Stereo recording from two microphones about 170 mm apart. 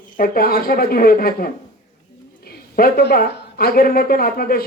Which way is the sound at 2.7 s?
65° left (ahead or behind).